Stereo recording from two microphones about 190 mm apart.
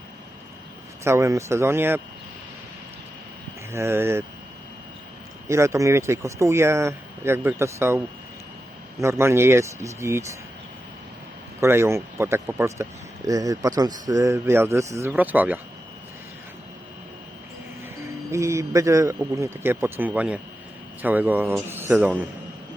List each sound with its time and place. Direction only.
1.0 s speech: 15° right (ahead or behind)
3.7 s speech: 15° right (ahead or behind)
5.5 s speech: 15° right (ahead or behind)
11.6 s speech: 15° right (ahead or behind)
18.3 s speech: 15° right (ahead or behind)